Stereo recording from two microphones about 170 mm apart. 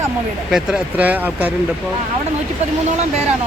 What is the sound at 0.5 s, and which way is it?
Speech, 5° right (ahead or behind).